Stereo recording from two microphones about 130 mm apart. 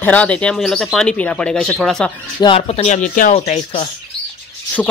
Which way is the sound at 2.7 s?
55° left (ahead or behind).